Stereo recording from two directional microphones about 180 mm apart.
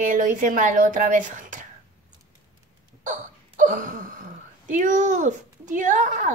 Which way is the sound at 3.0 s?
45° right (ahead or behind).